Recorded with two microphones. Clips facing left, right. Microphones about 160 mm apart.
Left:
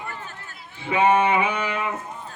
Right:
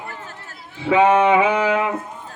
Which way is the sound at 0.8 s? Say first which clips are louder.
Right 4 dB; 90° right.